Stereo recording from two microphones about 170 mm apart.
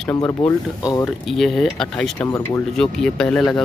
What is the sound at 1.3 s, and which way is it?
Speech, centre (ahead or behind).